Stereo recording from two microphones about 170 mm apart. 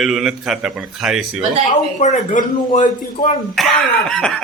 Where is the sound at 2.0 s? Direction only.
50° left (ahead or behind).